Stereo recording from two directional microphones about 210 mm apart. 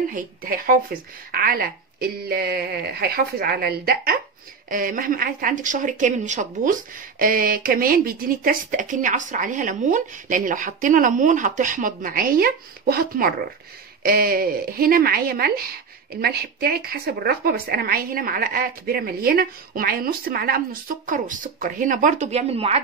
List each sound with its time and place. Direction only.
0.1 s a woman's voice: 45° right (ahead or behind)